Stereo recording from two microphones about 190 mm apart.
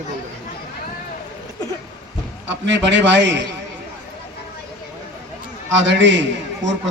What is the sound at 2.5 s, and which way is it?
A man's voice, 70° right (ahead or behind).